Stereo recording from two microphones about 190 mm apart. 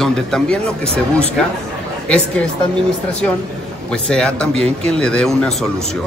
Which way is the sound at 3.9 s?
5° left (ahead or behind).